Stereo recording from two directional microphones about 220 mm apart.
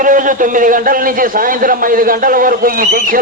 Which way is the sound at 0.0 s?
35° right (ahead or behind).